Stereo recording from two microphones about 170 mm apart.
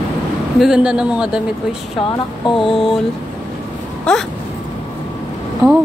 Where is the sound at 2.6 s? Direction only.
30° left (ahead or behind).